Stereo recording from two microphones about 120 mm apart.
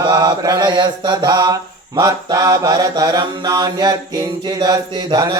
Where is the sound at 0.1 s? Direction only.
35° right (ahead or behind).